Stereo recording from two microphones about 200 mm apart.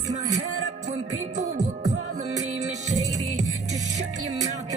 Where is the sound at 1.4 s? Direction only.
35° right (ahead or behind).